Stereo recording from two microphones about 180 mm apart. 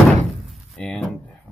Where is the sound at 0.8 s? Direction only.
5° left (ahead or behind).